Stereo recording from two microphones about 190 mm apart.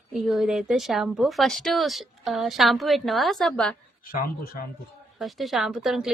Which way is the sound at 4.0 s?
50° left (ahead or behind).